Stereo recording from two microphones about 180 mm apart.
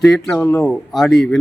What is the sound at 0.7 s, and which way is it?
Speech, centre (ahead or behind).